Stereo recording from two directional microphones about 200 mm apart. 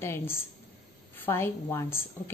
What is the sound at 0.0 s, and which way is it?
A woman's voice, 10° left (ahead or behind).